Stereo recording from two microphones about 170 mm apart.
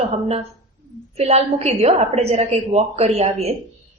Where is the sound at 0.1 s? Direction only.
40° right (ahead or behind).